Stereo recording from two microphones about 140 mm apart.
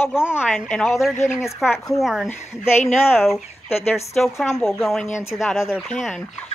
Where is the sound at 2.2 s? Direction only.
15° left (ahead or behind).